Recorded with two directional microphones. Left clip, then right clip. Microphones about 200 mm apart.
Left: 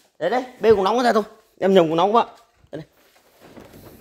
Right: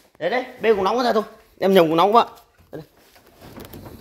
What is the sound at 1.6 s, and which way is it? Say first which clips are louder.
Speech: right 1 dB; 10° left (ahead or behind).